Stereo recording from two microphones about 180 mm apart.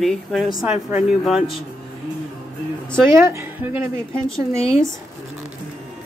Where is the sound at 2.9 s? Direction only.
15° right (ahead or behind).